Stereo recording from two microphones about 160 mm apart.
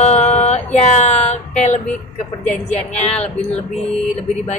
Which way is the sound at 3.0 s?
40° left (ahead or behind).